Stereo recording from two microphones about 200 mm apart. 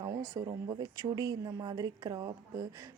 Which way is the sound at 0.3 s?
20° right (ahead or behind).